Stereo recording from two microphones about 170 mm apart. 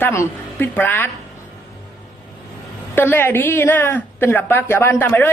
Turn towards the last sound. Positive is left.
turn(degrees=15)  # may be behind; listen again after turning